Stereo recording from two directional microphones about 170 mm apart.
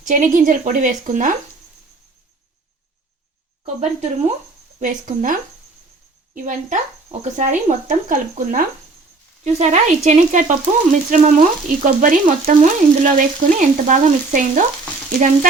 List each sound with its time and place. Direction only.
0.0 s frying: 45° right (ahead or behind)
3.8 s speech: 40° right (ahead or behind)
4.8 s frying: 50° right (ahead or behind)